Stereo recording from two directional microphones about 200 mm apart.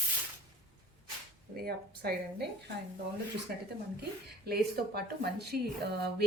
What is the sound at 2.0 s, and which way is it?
Speech, 50° right (ahead or behind).